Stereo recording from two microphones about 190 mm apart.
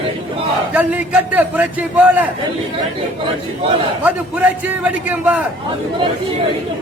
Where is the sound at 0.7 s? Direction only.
10° right (ahead or behind).